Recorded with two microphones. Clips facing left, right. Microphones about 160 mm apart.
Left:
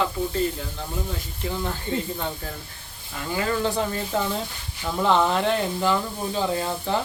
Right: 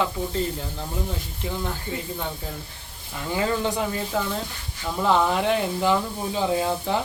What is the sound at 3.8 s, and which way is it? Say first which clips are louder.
Speech: left 1 dB; centre (ahead or behind).